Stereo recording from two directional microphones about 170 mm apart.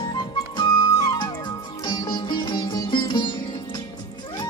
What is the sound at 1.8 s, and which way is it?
Sitar, 25° left (ahead or behind).